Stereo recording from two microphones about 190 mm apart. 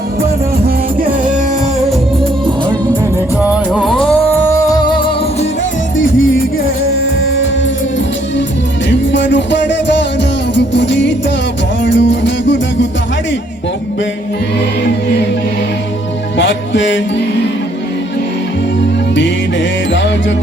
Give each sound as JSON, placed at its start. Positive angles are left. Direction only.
{"t": 3.4, "sound": "music", "side_deg": 0}
{"t": 4.4, "sound": "music", "side_deg": 15}
{"t": 8.9, "sound": "music", "side_deg": 70}
{"t": 16.4, "sound": "music", "side_deg": 75}
{"t": 18.8, "sound": "music", "side_deg": 70}